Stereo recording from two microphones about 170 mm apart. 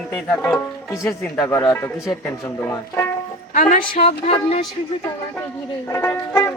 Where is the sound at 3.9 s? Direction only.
35° left (ahead or behind).